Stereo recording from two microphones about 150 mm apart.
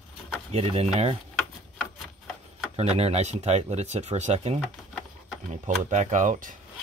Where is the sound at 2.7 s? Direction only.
45° right (ahead or behind).